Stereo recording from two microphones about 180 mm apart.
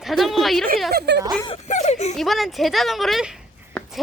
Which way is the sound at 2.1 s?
Centre (ahead or behind).